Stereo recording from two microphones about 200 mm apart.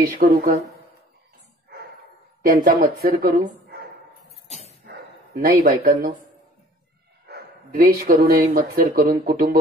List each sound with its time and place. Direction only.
0.0 s speech: 45° right (ahead or behind)
2.4 s speech: 45° right (ahead or behind)
4.5 s dog: 30° left (ahead or behind)
4.8 s bow-wow: 50° right (ahead or behind)
7.2 s speech: 50° right (ahead or behind)